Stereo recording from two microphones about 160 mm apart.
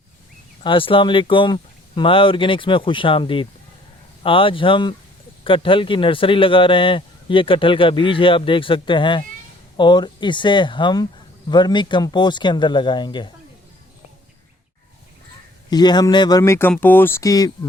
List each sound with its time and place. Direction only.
0.6 s a man's voice: 30° left (ahead or behind)
15.7 s speech: 25° left (ahead or behind)